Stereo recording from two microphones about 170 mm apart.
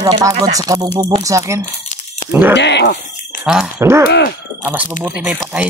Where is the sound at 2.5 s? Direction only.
90° left.